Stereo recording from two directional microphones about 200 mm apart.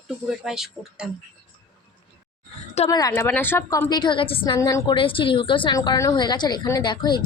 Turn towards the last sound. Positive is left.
turn(degrees=20)  # may be behind; listen again after turning